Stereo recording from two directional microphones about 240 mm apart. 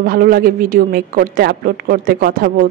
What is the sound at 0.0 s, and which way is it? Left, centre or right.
Speech, right.